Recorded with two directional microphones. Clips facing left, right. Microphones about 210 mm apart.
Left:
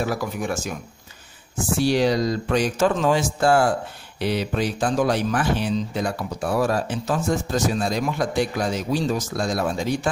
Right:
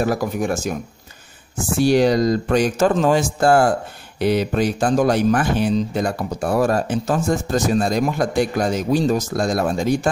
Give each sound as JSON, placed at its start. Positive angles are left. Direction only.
{"t": 0.0, "sound": "speech", "side_deg": -45}
{"t": 1.8, "sound": "speech", "side_deg": -50}